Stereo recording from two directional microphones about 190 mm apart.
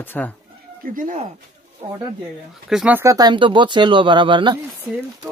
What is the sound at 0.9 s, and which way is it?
Speech, 45° right (ahead or behind).